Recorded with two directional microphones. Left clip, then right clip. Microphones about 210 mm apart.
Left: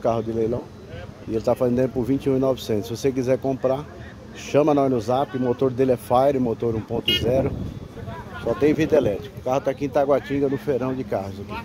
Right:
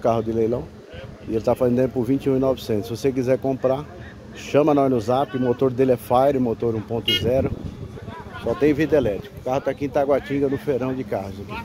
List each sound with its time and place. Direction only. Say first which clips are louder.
0.0 s speech: right 2 dB; 20° right (ahead or behind)
8.5 s speech: even; 5° right (ahead or behind)